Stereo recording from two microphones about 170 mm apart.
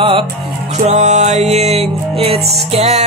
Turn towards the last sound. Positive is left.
turn(degrees=-40)  # may be behind; listen again after turning